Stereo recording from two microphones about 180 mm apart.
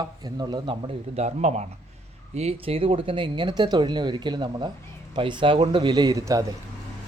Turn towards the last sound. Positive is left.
turn(degrees=-20)  # may be behind; listen again after turning